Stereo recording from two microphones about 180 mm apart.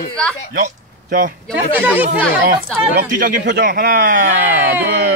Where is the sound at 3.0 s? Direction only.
50° right (ahead or behind).